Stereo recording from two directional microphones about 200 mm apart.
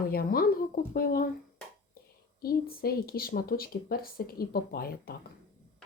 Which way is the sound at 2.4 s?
50° left (ahead or behind).